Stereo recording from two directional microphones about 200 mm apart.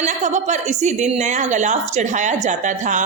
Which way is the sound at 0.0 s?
35° right (ahead or behind).